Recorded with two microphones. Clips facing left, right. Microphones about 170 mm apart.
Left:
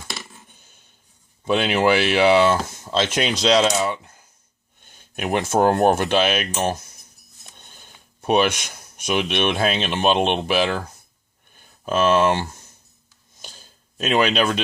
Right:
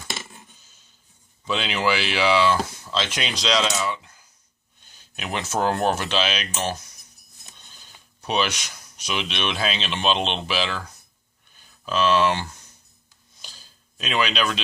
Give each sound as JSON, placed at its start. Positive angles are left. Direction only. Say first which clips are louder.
{"t": 0.1, "sound": "coin", "louder": "right 1 dB", "side_deg": 0}
{"t": 0.5, "sound": "a sound", "louder": "left 3 dB", "side_deg": 55}
{"t": 1.5, "sound": "speech", "louder": "left 6 dB", "side_deg": 55}
{"t": 3.8, "sound": "coin", "louder": "left 3 dB", "side_deg": 50}
{"t": 4.8, "sound": "speech", "louder": "left 8 dB", "side_deg": 55}
{"t": 11.5, "sound": "a sound", "louder": "left 3 dB", "side_deg": 50}